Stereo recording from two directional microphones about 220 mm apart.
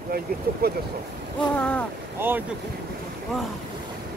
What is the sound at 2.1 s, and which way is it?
Speech, 10° right (ahead or behind).